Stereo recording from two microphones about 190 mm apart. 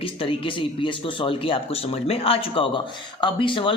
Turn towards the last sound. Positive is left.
turn(degrees=25)  # may be behind; listen again after turning